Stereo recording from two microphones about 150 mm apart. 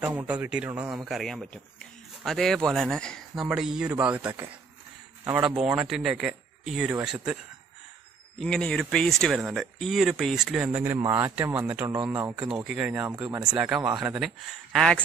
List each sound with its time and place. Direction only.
0.0 s speech: 10° right (ahead or behind)
8.4 s speech: 5° left (ahead or behind); by 12.4 s 20° right (ahead or behind)
12.6 s speech: 5° right (ahead or behind)
13.1 s speech: 25° right (ahead or behind)
13.5 s speech: 5° right (ahead or behind)